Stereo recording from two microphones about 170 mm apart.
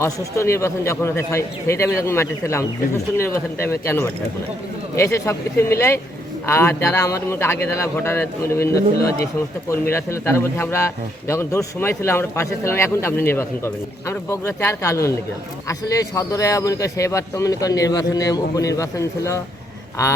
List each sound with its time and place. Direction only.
0.0 s a man's voice: 15° left (ahead or behind)
9.9 s a man's voice: 15° left (ahead or behind)